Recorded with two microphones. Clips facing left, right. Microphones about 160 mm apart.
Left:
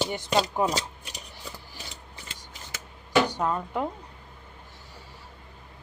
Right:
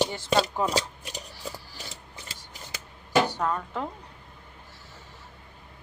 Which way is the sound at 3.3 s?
15° left (ahead or behind).